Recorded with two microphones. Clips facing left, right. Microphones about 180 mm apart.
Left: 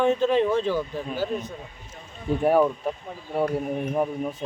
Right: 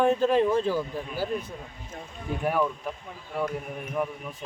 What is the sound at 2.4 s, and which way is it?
Speech, 30° left (ahead or behind).